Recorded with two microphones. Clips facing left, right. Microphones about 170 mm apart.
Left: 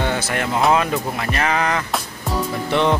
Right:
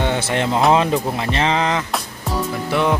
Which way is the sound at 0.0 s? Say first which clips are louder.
Right 2 dB; 25° right (ahead or behind).